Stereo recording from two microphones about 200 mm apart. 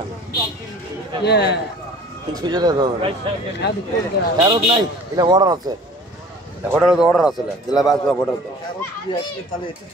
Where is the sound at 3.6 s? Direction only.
55° left (ahead or behind).